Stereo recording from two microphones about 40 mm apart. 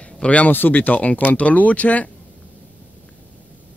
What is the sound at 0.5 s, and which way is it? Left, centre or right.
Speech, left.